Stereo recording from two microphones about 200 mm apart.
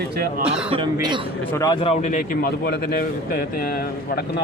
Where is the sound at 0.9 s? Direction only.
20° right (ahead or behind).